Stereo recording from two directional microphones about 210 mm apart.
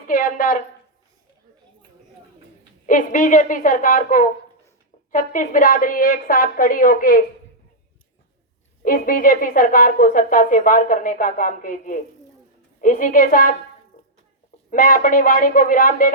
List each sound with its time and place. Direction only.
0.1 s a woman's voice: 40° left (ahead or behind)
2.8 s a woman's voice: 40° left (ahead or behind)
8.8 s a woman's voice: 40° left (ahead or behind)
14.7 s a woman's voice: 40° left (ahead or behind)